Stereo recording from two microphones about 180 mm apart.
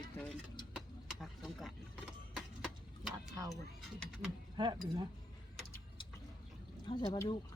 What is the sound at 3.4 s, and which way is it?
Speech, 20° right (ahead or behind).